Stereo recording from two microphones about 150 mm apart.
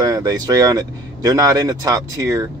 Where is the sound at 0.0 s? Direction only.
25° right (ahead or behind).